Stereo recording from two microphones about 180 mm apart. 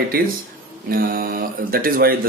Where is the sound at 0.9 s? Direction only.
55° right (ahead or behind).